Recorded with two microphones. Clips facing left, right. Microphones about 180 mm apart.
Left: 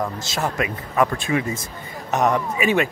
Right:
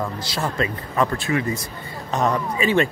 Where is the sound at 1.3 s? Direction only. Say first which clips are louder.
Even; 25° left (ahead or behind).